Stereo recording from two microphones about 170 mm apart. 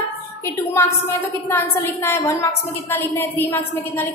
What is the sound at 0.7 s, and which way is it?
A woman's voice, 15° left (ahead or behind).